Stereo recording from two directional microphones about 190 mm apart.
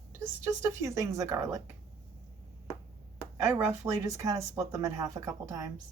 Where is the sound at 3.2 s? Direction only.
10° right (ahead or behind).